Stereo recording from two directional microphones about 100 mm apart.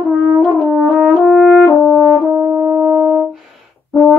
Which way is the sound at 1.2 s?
5° left (ahead or behind).